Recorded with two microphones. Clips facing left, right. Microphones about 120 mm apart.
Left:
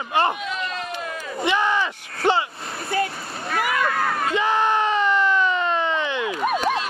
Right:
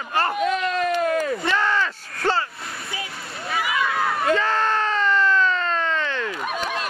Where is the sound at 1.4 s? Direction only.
15° left (ahead or behind).